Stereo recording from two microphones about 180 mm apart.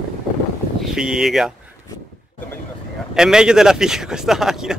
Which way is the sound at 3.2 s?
5° right (ahead or behind).